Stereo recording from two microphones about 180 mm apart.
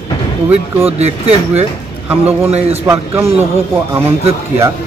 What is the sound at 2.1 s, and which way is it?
Speech, 10° right (ahead or behind).